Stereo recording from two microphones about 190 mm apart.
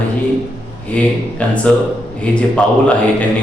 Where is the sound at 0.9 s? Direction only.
5° left (ahead or behind).